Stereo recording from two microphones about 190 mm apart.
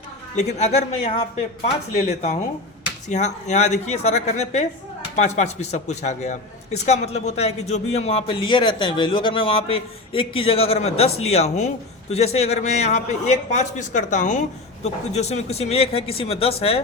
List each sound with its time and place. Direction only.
0.3 s a man's voice: 35° left (ahead or behind)